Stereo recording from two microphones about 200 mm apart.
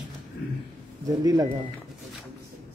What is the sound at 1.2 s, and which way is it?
Speech, 20° right (ahead or behind).